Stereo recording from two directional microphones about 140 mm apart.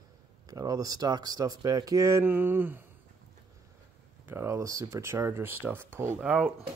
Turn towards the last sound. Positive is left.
turn(degrees=-10)  # may be behind; listen again after turning